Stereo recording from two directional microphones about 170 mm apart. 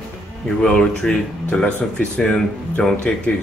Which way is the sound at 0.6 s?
5° left (ahead or behind).